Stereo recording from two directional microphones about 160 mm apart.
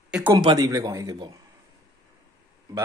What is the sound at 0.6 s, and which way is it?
Speech, 20° right (ahead or behind).